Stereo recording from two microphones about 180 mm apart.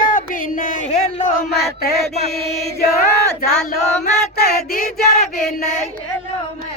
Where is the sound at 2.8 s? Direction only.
55° left (ahead or behind).